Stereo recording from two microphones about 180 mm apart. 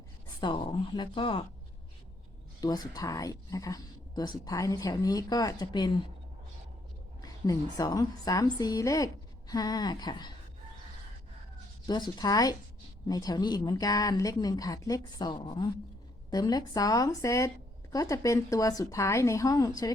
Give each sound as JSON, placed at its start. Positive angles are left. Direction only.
{"t": 0.3, "sound": "speech", "side_deg": 25}
{"t": 2.6, "sound": "speech", "side_deg": 20}
{"t": 7.2, "sound": "speech", "side_deg": 20}
{"t": 11.9, "sound": "speech", "side_deg": 25}